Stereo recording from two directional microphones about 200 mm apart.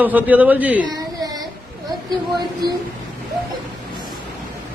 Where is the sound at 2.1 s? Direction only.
20° right (ahead or behind).